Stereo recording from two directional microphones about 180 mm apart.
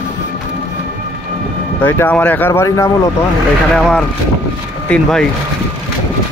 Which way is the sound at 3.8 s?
5° left (ahead or behind).